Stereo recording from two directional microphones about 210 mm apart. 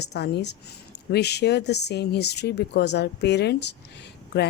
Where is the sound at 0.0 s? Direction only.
50° left (ahead or behind).